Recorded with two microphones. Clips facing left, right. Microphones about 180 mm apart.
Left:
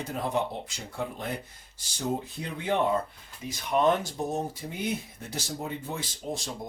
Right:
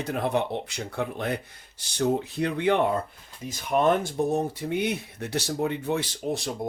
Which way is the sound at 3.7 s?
45° right (ahead or behind).